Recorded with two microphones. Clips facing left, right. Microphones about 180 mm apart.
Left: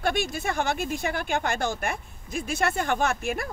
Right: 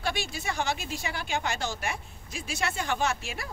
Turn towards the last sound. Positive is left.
turn(degrees=55)  # may be behind; listen again after turning